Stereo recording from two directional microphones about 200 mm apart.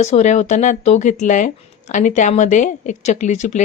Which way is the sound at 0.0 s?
35° left (ahead or behind).